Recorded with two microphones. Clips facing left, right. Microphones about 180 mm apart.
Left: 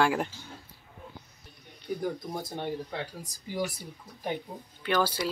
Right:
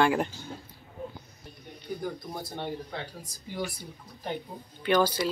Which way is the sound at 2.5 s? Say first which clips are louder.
Even; 10° left (ahead or behind).